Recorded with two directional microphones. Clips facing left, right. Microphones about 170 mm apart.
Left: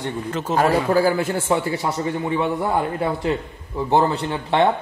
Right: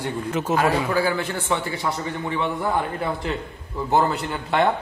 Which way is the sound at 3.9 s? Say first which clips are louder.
Left 2 dB; 30° left (ahead or behind).